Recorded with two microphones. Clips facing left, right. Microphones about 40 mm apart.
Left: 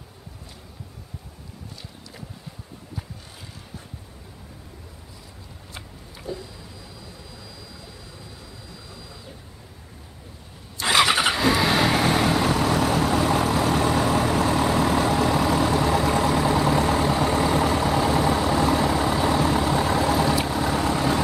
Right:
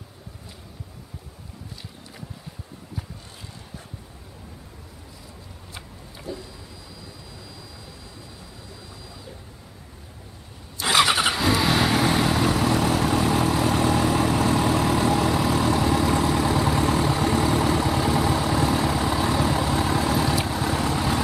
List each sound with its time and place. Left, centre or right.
5.8 s vehicle: centre
10.8 s vehicle: centre